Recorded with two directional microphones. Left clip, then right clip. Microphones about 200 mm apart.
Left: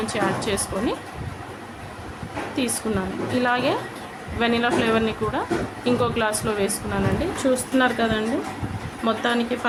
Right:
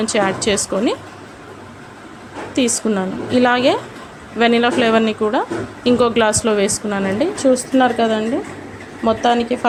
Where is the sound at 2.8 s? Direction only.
30° right (ahead or behind).